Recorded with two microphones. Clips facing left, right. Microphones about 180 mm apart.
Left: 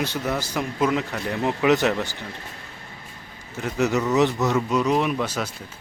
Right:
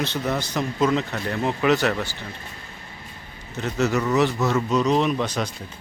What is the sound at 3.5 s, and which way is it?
A man's voice, 10° left (ahead or behind).